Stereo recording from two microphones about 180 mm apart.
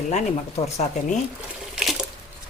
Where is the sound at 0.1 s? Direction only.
40° left (ahead or behind).